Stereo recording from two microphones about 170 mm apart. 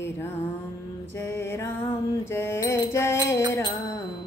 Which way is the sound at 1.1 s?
15° left (ahead or behind).